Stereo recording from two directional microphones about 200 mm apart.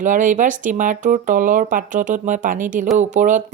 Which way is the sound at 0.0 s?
40° right (ahead or behind).